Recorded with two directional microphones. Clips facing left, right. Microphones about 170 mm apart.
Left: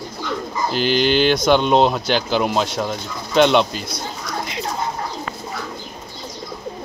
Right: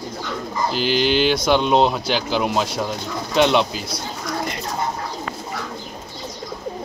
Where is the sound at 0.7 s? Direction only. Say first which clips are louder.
Left 2 dB; centre (ahead or behind).